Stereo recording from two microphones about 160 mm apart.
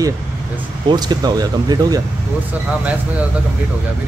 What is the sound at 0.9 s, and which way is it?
Speech, 25° right (ahead or behind).